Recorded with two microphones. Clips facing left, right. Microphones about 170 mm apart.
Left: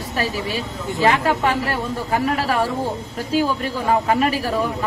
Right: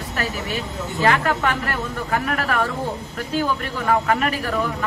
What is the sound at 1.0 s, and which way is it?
A man's voice, 20° left (ahead or behind).